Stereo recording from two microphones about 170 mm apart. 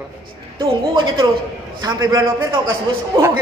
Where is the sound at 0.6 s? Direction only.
30° right (ahead or behind).